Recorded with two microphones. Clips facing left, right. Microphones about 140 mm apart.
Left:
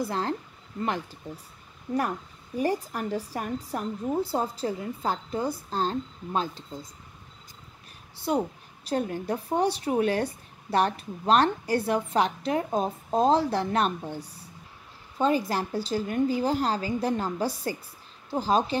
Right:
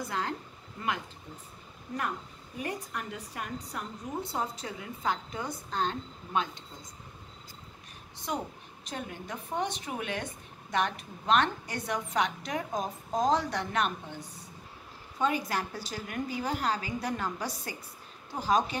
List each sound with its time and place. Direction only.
0.0 s a woman's voice: 30° left (ahead or behind)
8.3 s a woman's voice: 40° left (ahead or behind)